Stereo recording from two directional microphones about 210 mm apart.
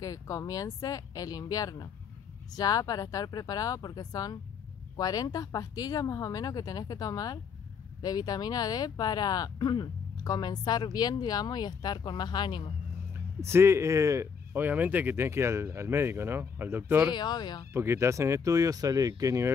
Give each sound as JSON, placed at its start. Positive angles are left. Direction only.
{"t": 0.0, "sound": "speech", "side_deg": 15}
{"t": 13.4, "sound": "speech", "side_deg": -10}
{"t": 17.1, "sound": "speech", "side_deg": 20}
{"t": 17.7, "sound": "speech", "side_deg": -15}